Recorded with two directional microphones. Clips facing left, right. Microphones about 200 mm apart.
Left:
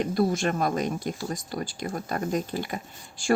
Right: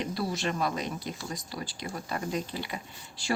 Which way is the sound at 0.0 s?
50° left (ahead or behind).